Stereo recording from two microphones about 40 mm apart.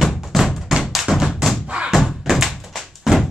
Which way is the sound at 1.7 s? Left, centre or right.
Right.